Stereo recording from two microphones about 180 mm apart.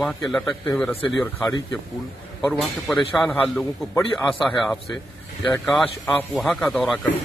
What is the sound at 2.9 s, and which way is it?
Speech, centre (ahead or behind).